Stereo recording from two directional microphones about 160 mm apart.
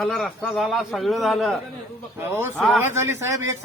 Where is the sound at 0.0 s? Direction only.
Centre (ahead or behind).